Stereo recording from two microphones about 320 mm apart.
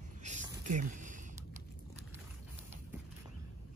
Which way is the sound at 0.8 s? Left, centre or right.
Right.